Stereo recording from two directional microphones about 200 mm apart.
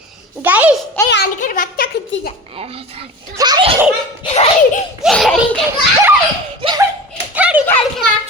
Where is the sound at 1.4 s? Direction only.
45° left (ahead or behind).